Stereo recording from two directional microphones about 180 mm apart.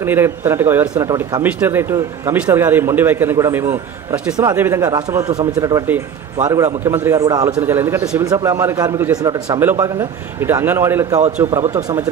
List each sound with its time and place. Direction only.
0.0 s speech: 10° right (ahead or behind)